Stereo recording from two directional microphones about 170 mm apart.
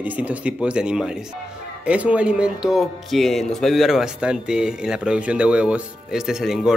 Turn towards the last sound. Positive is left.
turn(degrees=-5)  # may be behind; listen again after turning